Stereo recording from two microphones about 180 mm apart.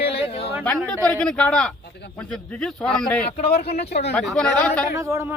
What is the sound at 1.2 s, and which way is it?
Speech, 5° left (ahead or behind).